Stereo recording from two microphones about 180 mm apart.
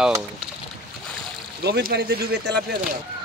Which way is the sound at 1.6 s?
65° right (ahead or behind).